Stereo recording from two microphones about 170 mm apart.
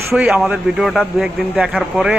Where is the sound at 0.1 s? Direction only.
5° right (ahead or behind).